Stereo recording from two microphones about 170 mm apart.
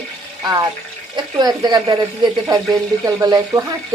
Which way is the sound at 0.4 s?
20° right (ahead or behind).